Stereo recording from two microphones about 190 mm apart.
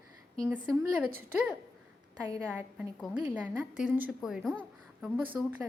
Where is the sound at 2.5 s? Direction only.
5° right (ahead or behind).